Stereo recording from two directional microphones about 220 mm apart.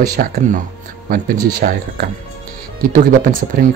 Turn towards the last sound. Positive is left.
turn(degrees=-40)  # may be behind; listen again after turning